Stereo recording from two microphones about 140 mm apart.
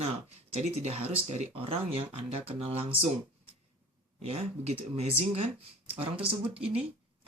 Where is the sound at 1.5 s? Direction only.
40° right (ahead or behind).